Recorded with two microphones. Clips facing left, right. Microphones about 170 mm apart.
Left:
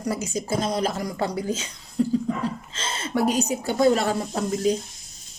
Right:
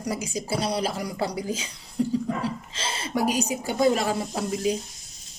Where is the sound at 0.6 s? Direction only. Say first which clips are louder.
Left 2 dB; 45° left (ahead or behind).